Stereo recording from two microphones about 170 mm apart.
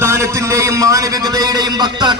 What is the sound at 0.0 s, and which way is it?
A man's voice, 15° right (ahead or behind).